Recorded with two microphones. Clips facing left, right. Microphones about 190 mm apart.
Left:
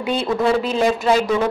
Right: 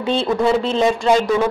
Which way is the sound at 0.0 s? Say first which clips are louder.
Right 2 dB; 25° right (ahead or behind).